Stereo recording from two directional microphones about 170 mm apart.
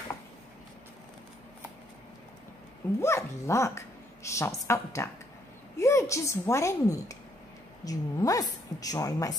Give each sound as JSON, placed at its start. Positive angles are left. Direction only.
{"t": 3.0, "sound": "a woman's voice", "side_deg": 15}